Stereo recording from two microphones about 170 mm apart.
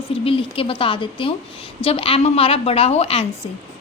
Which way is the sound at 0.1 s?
30° left (ahead or behind).